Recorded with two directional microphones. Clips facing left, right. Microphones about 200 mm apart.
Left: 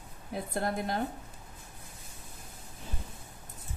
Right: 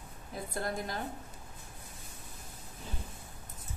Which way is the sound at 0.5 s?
60° left (ahead or behind).